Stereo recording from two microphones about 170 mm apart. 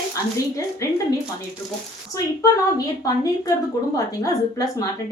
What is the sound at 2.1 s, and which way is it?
Speech, 20° left (ahead or behind).